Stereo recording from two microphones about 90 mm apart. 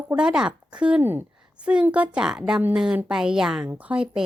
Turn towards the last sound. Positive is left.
turn(degrees=-10)  # may be behind; listen again after turning